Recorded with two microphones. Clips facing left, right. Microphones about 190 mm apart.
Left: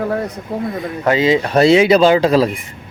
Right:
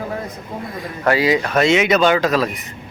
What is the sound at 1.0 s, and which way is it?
Speech, 20° left (ahead or behind).